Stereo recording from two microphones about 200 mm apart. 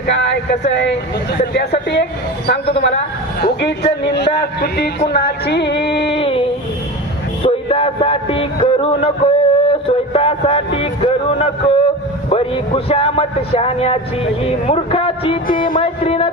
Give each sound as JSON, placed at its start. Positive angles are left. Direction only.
{"t": 0.8, "sound": "a man's voice", "side_deg": 60}
{"t": 6.1, "sound": "a sound", "side_deg": 30}
{"t": 7.4, "sound": "music", "side_deg": 30}
{"t": 12.3, "sound": "speech", "side_deg": 30}